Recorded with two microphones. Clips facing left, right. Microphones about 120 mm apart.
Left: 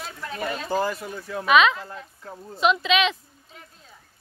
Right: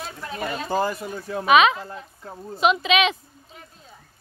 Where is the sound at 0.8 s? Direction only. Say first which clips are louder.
Right 2 dB; 20° right (ahead or behind).